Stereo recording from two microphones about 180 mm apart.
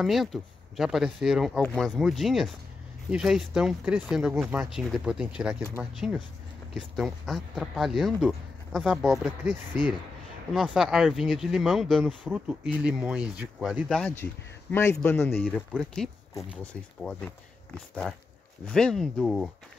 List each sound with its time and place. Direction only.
0.0 s a man's voice: centre (ahead or behind)
15.4 s speech: centre (ahead or behind)